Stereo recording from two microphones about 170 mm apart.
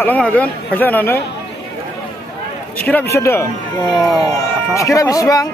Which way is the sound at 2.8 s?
10° left (ahead or behind).